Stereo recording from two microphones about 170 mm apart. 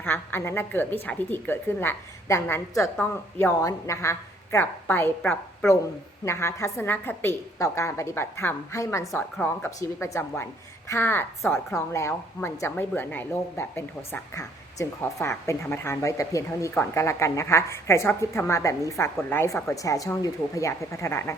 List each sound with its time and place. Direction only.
0.0 s a woman's voice: 10° left (ahead or behind)